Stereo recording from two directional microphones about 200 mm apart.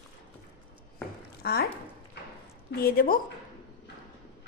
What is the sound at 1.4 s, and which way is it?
Speech, 50° left (ahead or behind).